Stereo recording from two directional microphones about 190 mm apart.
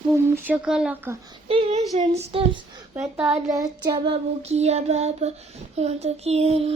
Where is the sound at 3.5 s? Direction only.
20° right (ahead or behind).